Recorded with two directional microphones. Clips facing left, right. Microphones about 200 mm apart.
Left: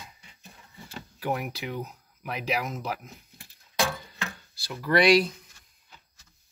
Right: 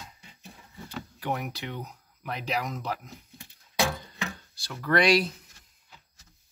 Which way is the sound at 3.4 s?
15° right (ahead or behind).